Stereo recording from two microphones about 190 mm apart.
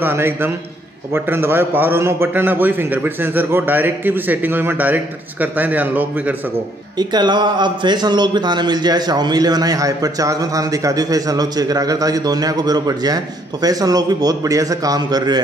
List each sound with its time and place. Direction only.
0.0 s a man's voice: 10° right (ahead or behind)
7.0 s a man's voice: 20° right (ahead or behind)